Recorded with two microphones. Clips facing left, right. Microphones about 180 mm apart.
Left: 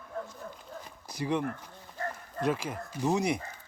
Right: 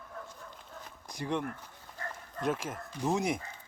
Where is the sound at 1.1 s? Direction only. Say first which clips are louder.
Left 3 dB; centre (ahead or behind).